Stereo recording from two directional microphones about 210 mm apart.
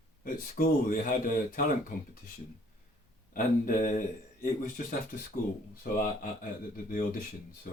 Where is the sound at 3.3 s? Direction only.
40° left (ahead or behind).